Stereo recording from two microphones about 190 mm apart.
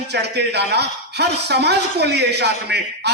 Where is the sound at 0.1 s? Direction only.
60° right (ahead or behind).